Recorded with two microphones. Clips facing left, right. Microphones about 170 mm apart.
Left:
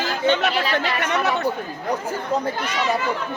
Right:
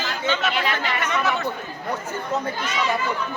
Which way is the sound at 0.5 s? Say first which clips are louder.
Left 3 dB; 35° left (ahead or behind).